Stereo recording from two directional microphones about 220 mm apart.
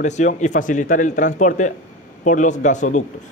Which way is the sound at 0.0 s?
35° left (ahead or behind).